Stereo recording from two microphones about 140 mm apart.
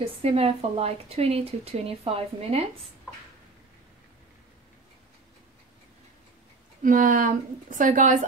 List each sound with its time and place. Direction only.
0.0 s a woman's voice: 40° right (ahead or behind)
6.8 s speech: 75° right (ahead or behind)